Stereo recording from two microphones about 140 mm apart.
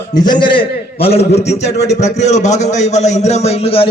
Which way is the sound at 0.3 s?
35° left (ahead or behind).